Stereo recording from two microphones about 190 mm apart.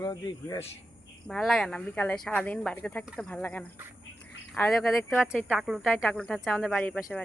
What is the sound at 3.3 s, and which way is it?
Speech, 10° left (ahead or behind).